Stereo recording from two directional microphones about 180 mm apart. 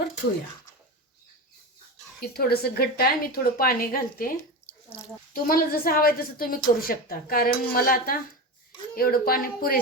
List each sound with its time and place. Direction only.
2.2 s a woman's voice: 60° left (ahead or behind)
5.3 s a woman's voice: 55° left (ahead or behind)